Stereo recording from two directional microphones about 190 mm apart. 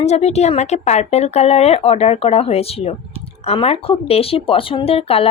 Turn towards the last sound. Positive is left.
turn(degrees=30)  # may be behind; listen again after turning